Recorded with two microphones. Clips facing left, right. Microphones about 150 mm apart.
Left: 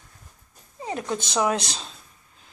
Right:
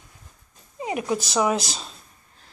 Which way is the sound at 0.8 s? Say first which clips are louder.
Right 3 dB; 10° right (ahead or behind).